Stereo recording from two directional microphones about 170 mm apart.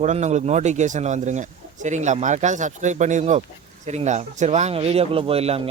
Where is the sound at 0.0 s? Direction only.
45° right (ahead or behind).